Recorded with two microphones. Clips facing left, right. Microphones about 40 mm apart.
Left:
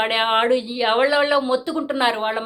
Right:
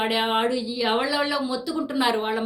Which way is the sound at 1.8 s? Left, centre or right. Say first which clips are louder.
Left 3 dB; left.